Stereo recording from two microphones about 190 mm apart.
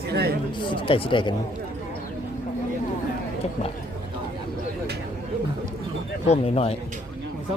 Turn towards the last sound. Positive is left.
turn(degrees=30)  # may be behind; listen again after turning